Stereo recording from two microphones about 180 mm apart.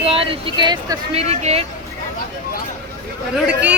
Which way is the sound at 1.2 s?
35° right (ahead or behind).